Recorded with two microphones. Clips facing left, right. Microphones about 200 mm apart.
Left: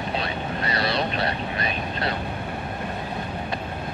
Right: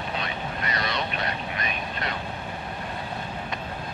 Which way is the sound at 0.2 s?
35° left (ahead or behind).